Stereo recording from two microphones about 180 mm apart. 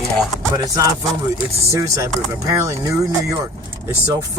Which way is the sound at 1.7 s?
20° right (ahead or behind).